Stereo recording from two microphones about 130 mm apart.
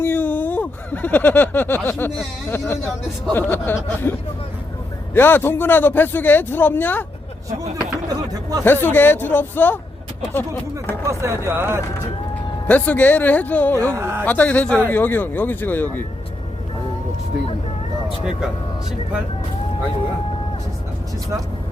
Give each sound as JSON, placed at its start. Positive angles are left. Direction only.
{"t": 0.0, "sound": "a sound", "side_deg": 15}
{"t": 2.5, "sound": "a man's voice", "side_deg": 15}
{"t": 5.1, "sound": "a man's voice", "side_deg": 15}
{"t": 8.1, "sound": "speech", "side_deg": -30}
{"t": 8.6, "sound": "a man's voice", "side_deg": 15}
{"t": 11.0, "sound": "speech", "side_deg": -20}
{"t": 12.6, "sound": "a man's voice", "side_deg": 10}
{"t": 13.7, "sound": "speech", "side_deg": -25}
{"t": 14.3, "sound": "a man's voice", "side_deg": 10}